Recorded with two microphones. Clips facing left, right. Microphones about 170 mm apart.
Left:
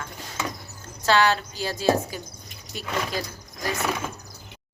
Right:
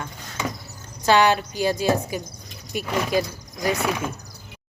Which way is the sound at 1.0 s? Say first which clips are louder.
Right 3 dB; 15° right (ahead or behind).